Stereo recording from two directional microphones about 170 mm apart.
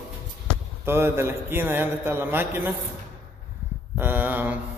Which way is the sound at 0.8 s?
15° right (ahead or behind).